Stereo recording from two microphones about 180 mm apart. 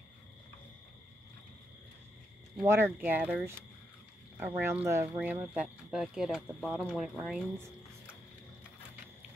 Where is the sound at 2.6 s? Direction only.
15° right (ahead or behind).